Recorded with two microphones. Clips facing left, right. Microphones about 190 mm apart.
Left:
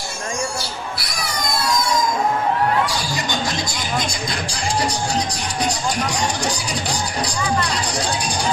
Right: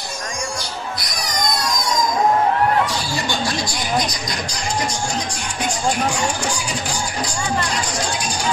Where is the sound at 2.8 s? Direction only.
15° left (ahead or behind).